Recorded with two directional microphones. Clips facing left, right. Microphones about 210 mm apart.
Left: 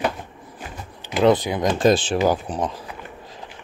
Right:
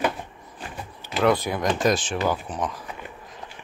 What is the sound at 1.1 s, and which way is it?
Speech, 15° left (ahead or behind).